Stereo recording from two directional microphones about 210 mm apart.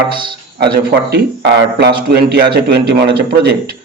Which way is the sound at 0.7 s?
50° right (ahead or behind).